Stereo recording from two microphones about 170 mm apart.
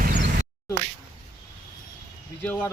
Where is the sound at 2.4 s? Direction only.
10° left (ahead or behind).